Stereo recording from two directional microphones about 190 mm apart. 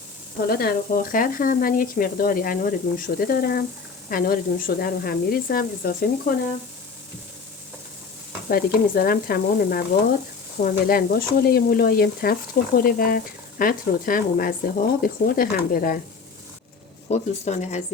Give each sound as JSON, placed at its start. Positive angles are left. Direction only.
{"t": 0.4, "sound": "stir", "side_deg": 55}
{"t": 8.4, "sound": "stir", "side_deg": 50}
{"t": 17.1, "sound": "speech", "side_deg": 35}